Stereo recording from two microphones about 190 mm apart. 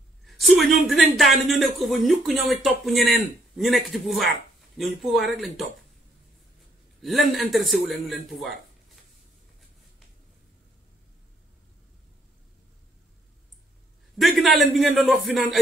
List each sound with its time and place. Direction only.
0.2 s speech: centre (ahead or behind)
7.0 s a man's voice: centre (ahead or behind)
14.2 s speech: centre (ahead or behind)